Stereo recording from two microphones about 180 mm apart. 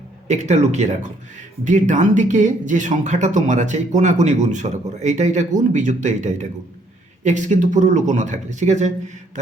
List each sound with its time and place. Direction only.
0.3 s speech: 40° right (ahead or behind)